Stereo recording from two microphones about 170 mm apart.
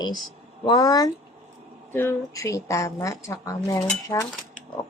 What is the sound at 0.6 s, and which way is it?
A child's voice, 20° left (ahead or behind).